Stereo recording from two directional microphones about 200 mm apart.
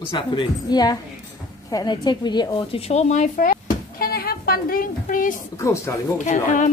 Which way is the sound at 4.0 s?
50° left (ahead or behind).